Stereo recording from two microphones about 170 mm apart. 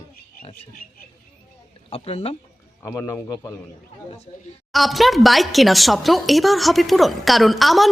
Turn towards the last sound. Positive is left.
turn(degrees=0)  # may be behind; listen again after turning